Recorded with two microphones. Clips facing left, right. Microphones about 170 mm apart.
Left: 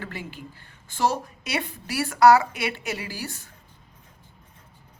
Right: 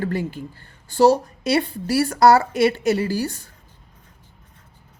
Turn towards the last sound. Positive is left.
turn(degrees=-40)  # may be behind; listen again after turning